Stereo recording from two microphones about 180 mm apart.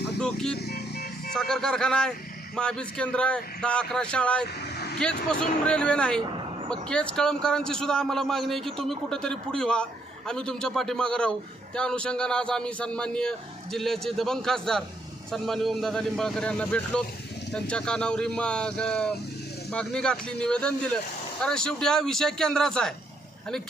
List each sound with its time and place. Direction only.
0.2 s a man's voice: 5° left (ahead or behind)
0.6 s vehicle: 60° left (ahead or behind)
1.3 s a man's voice: 5° left (ahead or behind)
4.6 s vehicle: 65° left (ahead or behind)
4.9 s a man's voice: 5° left (ahead or behind)